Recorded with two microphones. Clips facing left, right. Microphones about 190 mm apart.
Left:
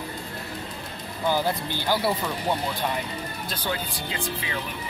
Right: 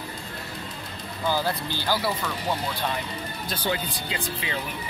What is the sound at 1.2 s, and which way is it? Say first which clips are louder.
Speech: left 2 dB; 15° left (ahead or behind).